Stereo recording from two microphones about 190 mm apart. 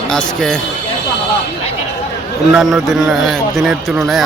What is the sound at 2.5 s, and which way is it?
Speech, centre (ahead or behind).